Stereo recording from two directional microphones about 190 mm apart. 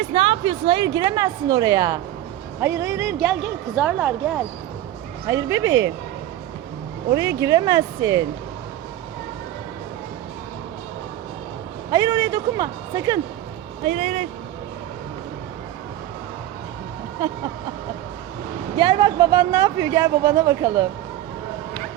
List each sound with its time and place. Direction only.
0.1 s a woman's voice: 30° right (ahead or behind); by 4.1 s 5° right (ahead or behind)
5.3 s speech: 15° right (ahead or behind)
7.1 s speech: 15° right (ahead or behind)
11.9 s a woman's voice: 20° right (ahead or behind)
13.8 s speech: 35° right (ahead or behind)
18.8 s speech: 25° right (ahead or behind)